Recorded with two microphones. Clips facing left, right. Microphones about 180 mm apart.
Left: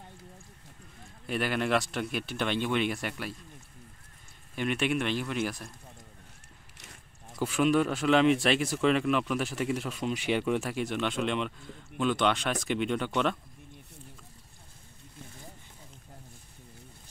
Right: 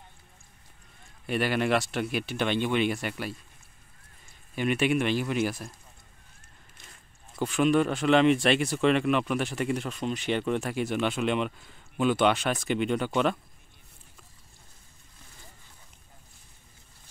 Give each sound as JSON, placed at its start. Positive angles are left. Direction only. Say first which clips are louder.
{"t": 1.2, "sound": "speech", "louder": "right 3 dB", "side_deg": 0}
{"t": 4.6, "sound": "speech", "louder": "right 4 dB", "side_deg": -5}
{"t": 7.4, "sound": "speech", "louder": "right 2 dB", "side_deg": 5}